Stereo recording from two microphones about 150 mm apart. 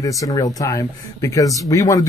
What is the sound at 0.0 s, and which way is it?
Speech, 20° left (ahead or behind).